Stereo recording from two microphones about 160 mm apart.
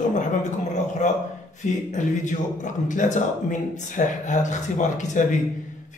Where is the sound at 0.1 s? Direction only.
50° left (ahead or behind).